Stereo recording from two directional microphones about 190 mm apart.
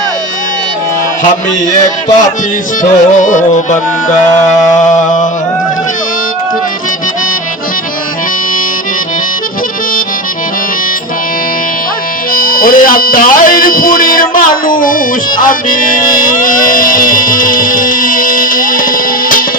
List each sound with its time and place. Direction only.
2.8 s music: 40° left (ahead or behind)
4.9 s music: 40° left (ahead or behind)
12.3 s speech: 50° left (ahead or behind)
14.7 s music: 45° left (ahead or behind)